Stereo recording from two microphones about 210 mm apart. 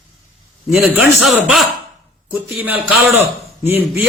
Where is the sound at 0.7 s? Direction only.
Centre (ahead or behind).